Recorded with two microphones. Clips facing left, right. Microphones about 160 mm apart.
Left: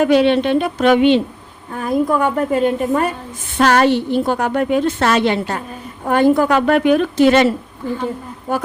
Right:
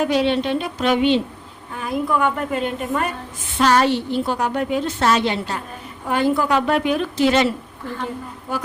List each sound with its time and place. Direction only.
0.0 s a woman's voice: 60° left (ahead or behind)
1.7 s a woman's voice: 40° left (ahead or behind)
3.6 s a woman's voice: 55° left (ahead or behind)
8.5 s a woman's voice: 50° left (ahead or behind)